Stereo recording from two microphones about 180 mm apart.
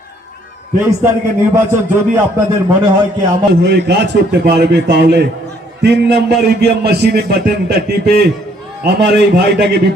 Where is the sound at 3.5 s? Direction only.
65° right (ahead or behind).